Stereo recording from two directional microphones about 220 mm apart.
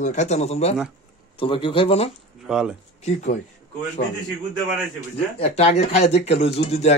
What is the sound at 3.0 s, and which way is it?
Speech, 30° left (ahead or behind).